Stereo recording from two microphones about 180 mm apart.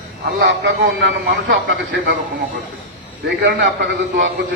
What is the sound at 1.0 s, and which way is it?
A man's voice, 70° right (ahead or behind).